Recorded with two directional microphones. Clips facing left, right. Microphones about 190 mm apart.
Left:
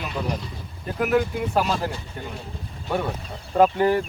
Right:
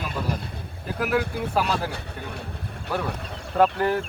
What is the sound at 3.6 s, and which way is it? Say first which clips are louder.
Speech: left 3 dB; 5° left (ahead or behind).